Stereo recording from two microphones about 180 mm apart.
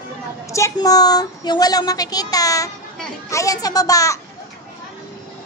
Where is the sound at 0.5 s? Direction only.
20° left (ahead or behind).